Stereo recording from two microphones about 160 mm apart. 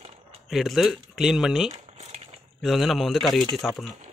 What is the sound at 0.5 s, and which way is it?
Speech, centre (ahead or behind).